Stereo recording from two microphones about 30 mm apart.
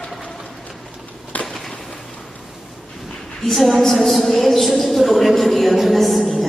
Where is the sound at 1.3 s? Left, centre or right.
Left.